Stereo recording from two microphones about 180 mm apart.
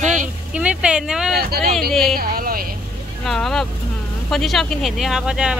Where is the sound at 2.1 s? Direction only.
55° right (ahead or behind).